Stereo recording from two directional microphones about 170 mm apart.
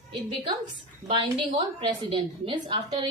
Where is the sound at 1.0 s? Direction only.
30° right (ahead or behind).